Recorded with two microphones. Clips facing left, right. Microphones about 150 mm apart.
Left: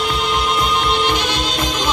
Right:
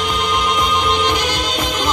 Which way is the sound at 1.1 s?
10° right (ahead or behind).